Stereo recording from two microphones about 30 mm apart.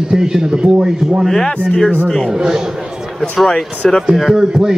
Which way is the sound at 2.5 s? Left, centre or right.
Centre.